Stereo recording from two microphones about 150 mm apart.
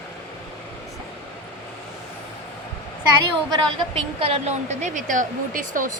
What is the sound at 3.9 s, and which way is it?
A woman's voice, 40° right (ahead or behind).